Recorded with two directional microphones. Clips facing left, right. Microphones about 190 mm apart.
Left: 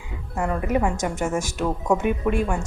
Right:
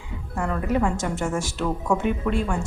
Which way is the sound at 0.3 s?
15° left (ahead or behind).